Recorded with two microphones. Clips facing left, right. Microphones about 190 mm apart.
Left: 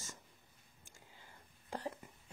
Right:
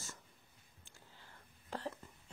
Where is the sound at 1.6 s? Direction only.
15° left (ahead or behind).